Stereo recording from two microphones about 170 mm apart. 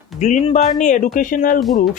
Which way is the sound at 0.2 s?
45° left (ahead or behind).